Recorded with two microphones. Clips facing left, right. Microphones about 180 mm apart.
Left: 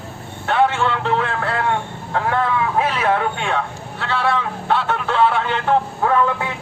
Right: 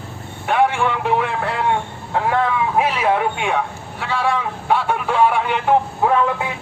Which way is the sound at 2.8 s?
10° right (ahead or behind).